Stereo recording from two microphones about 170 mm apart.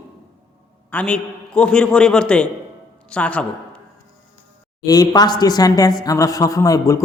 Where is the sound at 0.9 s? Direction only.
5° left (ahead or behind).